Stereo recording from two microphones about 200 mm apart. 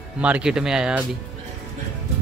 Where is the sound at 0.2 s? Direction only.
5° right (ahead or behind).